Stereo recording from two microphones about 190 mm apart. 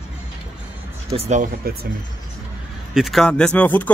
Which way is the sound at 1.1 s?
35° right (ahead or behind).